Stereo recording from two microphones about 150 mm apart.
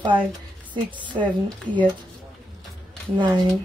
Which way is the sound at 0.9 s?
30° right (ahead or behind).